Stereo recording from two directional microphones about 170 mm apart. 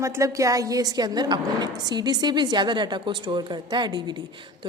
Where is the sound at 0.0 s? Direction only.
20° right (ahead or behind).